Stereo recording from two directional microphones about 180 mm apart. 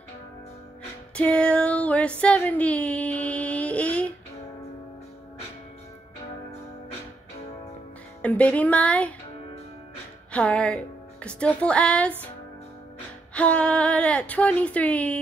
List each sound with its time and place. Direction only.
1.1 s a sound: 5° left (ahead or behind)
8.2 s speech: 10° left (ahead or behind)
10.3 s speech: 5° left (ahead or behind)
13.3 s speech: 5° left (ahead or behind)